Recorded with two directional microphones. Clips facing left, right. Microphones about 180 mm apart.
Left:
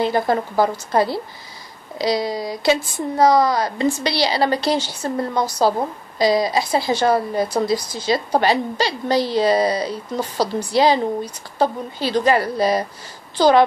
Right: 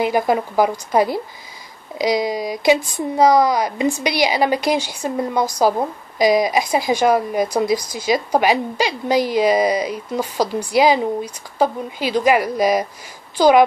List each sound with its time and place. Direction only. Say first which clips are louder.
0.0 s speech: right 1 dB; 15° right (ahead or behind)